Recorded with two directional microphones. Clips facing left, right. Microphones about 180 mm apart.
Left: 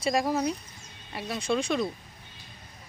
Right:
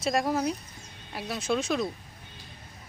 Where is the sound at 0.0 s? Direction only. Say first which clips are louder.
Even; centre (ahead or behind).